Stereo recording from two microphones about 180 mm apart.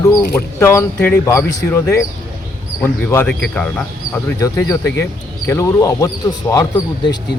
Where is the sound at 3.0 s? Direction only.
10° left (ahead or behind).